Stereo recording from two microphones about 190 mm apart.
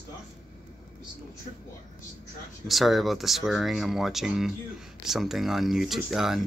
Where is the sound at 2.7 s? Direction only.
Centre (ahead or behind).